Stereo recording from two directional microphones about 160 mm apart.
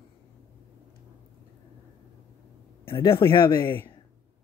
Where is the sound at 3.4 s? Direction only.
15° left (ahead or behind).